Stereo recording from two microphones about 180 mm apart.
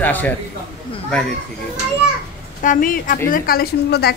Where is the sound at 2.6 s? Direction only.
50° left (ahead or behind).